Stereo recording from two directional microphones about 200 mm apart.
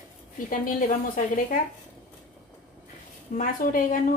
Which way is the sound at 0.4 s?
40° left (ahead or behind).